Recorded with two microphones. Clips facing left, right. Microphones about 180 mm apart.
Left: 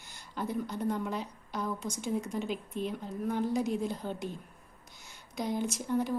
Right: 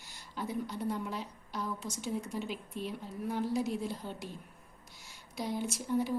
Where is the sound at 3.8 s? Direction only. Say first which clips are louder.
Left 4 dB; 50° left (ahead or behind).